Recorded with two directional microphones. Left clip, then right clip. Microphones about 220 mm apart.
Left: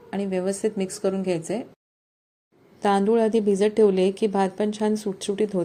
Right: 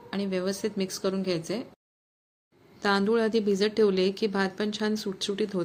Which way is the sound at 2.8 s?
15° left (ahead or behind).